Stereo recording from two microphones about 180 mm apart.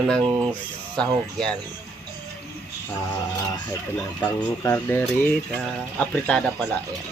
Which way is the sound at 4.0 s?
20° left (ahead or behind).